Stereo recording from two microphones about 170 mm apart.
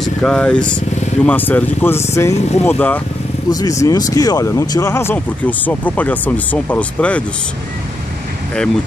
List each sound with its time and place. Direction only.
0.0 s speech: 5° left (ahead or behind)
2.3 s speech: 40° left (ahead or behind)
3.4 s speech: 20° left (ahead or behind)